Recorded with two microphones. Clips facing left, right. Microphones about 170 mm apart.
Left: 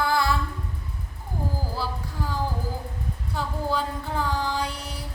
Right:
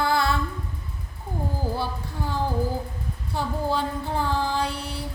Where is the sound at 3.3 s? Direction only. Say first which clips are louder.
Right 2 dB; 30° right (ahead or behind).